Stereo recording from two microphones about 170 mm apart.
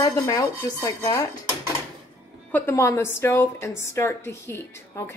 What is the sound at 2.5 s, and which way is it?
A woman's voice, 15° left (ahead or behind).